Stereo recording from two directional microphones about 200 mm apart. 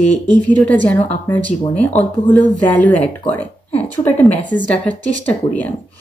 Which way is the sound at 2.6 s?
5° left (ahead or behind).